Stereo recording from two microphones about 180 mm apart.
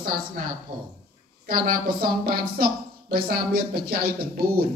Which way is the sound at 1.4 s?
50° right (ahead or behind).